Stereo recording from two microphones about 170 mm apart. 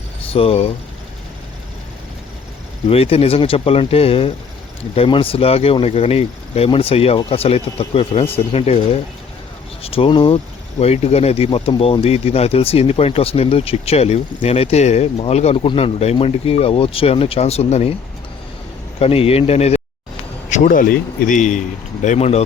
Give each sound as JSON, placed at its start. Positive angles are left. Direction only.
{"t": 0.3, "sound": "speech", "side_deg": 35}
{"t": 2.9, "sound": "speech", "side_deg": 35}
{"t": 18.9, "sound": "speech", "side_deg": 35}
{"t": 20.5, "sound": "speech", "side_deg": 50}